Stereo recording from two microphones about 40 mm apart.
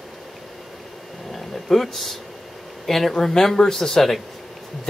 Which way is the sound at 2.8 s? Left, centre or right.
Centre.